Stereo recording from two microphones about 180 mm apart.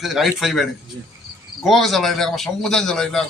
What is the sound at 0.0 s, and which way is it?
A man's voice, centre (ahead or behind).